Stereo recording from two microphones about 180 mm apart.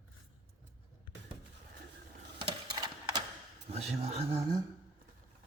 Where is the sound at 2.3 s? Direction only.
25° right (ahead or behind).